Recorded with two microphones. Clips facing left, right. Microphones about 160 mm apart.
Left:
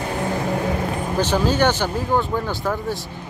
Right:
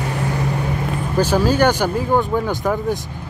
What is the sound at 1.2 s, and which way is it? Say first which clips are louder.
Speech: right 3 dB; 10° right (ahead or behind).